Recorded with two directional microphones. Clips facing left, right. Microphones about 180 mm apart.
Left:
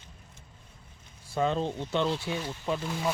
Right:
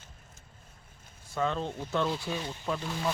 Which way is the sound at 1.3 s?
30° left (ahead or behind).